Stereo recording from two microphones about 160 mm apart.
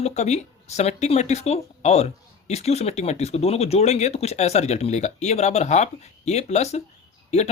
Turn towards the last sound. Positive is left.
turn(degrees=45)  # may be behind; listen again after turning